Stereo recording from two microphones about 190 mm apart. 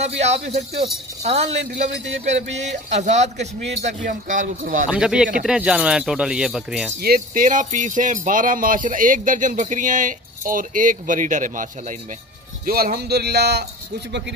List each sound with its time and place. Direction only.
0.2 s speech: 35° right (ahead or behind)
2.2 s speech: 35° right (ahead or behind)
4.8 s speech: 5° right (ahead or behind)
7.0 s speech: 50° right (ahead or behind)